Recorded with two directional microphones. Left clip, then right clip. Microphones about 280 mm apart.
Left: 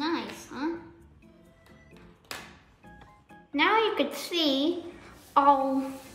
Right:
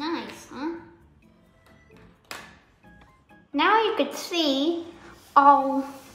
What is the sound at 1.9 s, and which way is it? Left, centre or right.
Music, centre.